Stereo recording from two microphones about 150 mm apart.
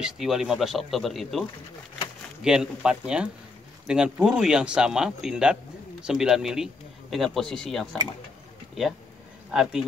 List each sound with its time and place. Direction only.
0.0 s speech: 5° right (ahead or behind)
2.4 s speech: 5° right (ahead or behind)
9.5 s speech: 5° right (ahead or behind)